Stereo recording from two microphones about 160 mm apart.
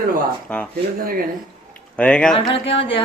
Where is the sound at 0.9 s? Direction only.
65° right (ahead or behind).